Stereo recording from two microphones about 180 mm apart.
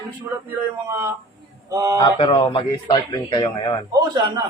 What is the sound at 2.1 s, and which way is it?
Speech, 30° left (ahead or behind).